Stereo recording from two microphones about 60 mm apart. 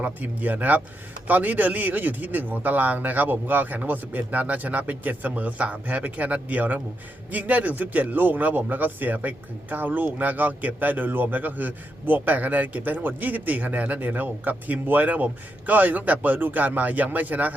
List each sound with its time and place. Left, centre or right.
0.0 s a man's voice: right